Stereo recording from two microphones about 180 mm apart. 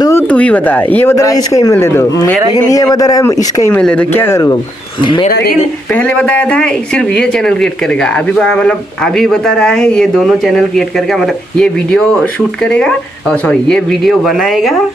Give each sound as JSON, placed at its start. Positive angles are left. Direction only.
{"t": 0.3, "sound": "speech", "side_deg": 5}
{"t": 5.0, "sound": "speech", "side_deg": 25}
{"t": 5.5, "sound": "speech", "side_deg": 5}